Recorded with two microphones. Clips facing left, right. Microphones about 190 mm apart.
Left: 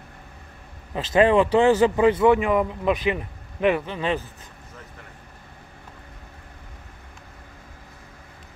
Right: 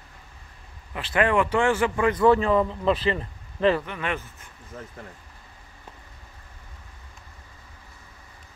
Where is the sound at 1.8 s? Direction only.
20° left (ahead or behind).